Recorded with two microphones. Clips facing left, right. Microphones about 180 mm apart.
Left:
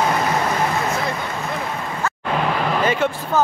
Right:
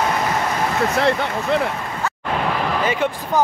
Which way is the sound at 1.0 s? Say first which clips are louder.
Right 6 dB; 70° right (ahead or behind).